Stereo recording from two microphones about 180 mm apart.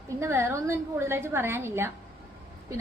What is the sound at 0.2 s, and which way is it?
A woman's voice, 15° right (ahead or behind).